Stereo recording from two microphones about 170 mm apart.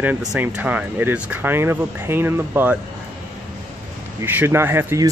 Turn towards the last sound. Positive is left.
turn(degrees=-15)  # may be behind; listen again after turning